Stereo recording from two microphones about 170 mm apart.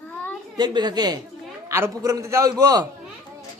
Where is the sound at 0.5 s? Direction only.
25° right (ahead or behind).